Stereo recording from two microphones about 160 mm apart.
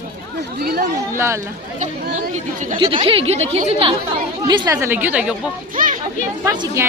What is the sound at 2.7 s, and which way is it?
A woman's voice, 30° right (ahead or behind).